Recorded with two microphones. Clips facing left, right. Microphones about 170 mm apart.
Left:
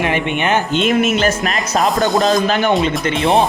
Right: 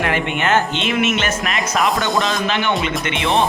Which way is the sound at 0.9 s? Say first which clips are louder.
Left 4 dB; 40° left (ahead or behind).